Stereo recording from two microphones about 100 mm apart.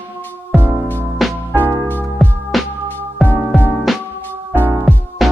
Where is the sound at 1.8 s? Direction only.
20° left (ahead or behind).